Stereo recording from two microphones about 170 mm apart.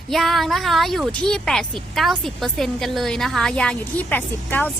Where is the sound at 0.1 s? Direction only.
Centre (ahead or behind).